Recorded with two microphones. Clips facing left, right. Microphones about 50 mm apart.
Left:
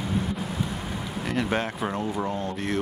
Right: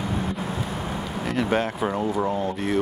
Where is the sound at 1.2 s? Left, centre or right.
Centre.